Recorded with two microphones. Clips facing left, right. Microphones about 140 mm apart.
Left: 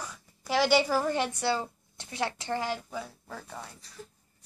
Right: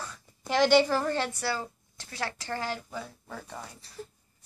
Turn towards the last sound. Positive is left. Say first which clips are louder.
# right 1 dB
turn(degrees=0)  # may be behind; listen again after turning